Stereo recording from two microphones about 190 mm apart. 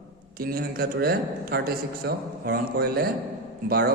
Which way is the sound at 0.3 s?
55° right (ahead or behind).